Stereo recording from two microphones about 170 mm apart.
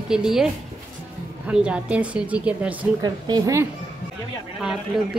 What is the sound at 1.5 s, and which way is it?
Speech, 5° right (ahead or behind).